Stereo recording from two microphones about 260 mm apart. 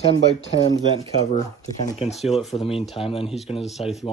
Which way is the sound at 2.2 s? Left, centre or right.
Centre.